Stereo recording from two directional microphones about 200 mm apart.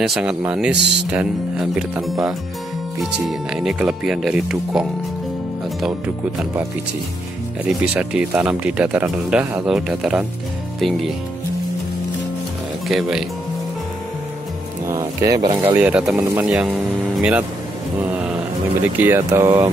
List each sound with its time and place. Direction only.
0.0 s speech: centre (ahead or behind)
7.6 s speech: 5° right (ahead or behind)
12.8 s speech: centre (ahead or behind)
14.9 s speech: 15° right (ahead or behind)
15.8 s speech: 5° right (ahead or behind)
18.9 s speech: 10° right (ahead or behind)